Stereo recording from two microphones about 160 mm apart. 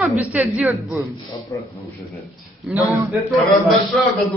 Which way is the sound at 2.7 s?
15° right (ahead or behind).